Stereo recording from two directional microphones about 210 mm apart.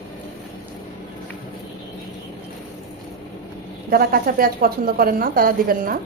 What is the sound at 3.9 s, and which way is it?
Speech, 45° right (ahead or behind).